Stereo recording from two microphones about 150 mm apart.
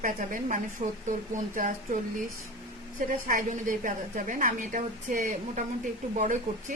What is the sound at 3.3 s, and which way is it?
A woman's voice, 65° right (ahead or behind).